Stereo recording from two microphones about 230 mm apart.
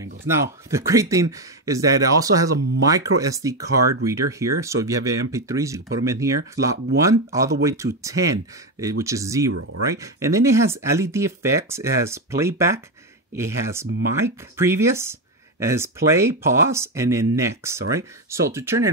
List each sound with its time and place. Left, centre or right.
0.3 s speech: centre
9.5 s speech: right
9.8 s speech: centre